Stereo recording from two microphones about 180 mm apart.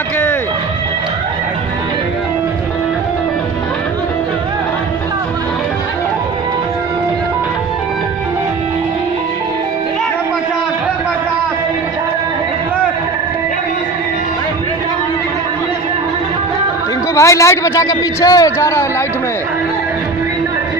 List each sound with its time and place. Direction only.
17.1 s a man's voice: 15° left (ahead or behind)